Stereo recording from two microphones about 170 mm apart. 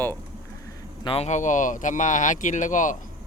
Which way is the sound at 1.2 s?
45° left (ahead or behind).